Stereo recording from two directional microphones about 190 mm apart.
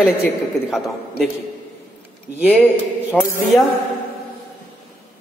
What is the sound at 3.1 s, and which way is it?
Music, 5° right (ahead or behind).